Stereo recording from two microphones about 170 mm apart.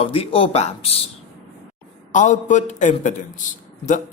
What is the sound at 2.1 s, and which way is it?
A man's voice, 45° left (ahead or behind).